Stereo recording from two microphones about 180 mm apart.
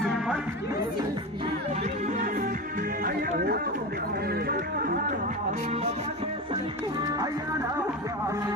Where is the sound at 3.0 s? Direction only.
55° right (ahead or behind).